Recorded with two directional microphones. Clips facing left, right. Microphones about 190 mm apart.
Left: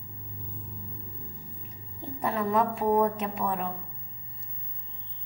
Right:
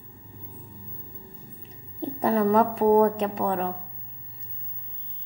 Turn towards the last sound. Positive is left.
turn(degrees=-35)  # may be behind; listen again after turning